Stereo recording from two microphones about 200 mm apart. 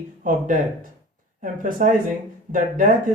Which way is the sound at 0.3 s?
40° right (ahead or behind).